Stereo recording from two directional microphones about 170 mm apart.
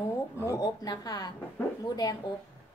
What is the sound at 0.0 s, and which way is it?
A woman's voice, 15° left (ahead or behind).